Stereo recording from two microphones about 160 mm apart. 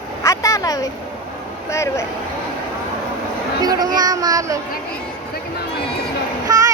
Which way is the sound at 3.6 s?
25° right (ahead or behind).